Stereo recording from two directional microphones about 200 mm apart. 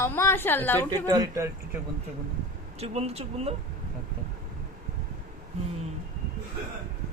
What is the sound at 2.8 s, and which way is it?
Speech, 30° right (ahead or behind).